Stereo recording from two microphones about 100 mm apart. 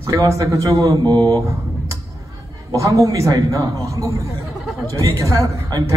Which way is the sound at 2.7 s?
35° right (ahead or behind).